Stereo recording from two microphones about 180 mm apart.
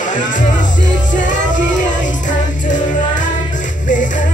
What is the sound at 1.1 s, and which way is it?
Music, 45° left (ahead or behind).